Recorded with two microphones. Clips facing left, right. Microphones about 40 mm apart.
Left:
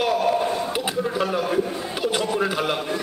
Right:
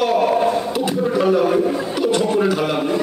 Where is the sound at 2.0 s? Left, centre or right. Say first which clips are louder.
Right 5 dB; centre.